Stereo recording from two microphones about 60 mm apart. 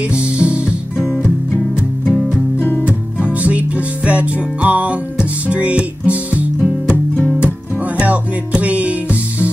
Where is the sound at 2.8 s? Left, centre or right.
Right.